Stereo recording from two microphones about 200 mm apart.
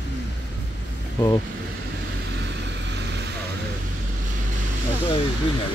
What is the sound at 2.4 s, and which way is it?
Vehicle, 60° right (ahead or behind).